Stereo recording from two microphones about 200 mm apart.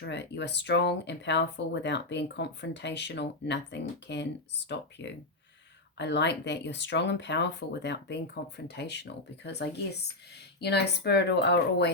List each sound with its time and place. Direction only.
0.0 s speech: 60° left (ahead or behind)
6.0 s speech: 60° left (ahead or behind)